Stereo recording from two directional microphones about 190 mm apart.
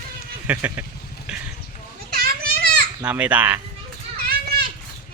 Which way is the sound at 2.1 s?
50° right (ahead or behind).